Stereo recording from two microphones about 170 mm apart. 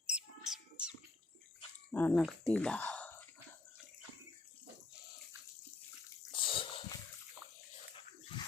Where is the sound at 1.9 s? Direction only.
10° left (ahead or behind).